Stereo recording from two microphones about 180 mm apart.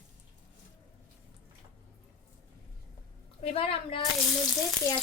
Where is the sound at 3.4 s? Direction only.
35° left (ahead or behind).